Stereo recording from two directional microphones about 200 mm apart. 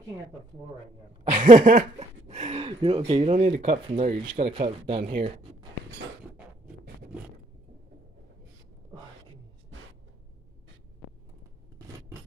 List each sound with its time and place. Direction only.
1.2 s speech: 40° right (ahead or behind)